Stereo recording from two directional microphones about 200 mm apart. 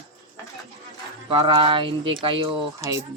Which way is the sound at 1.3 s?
25° right (ahead or behind).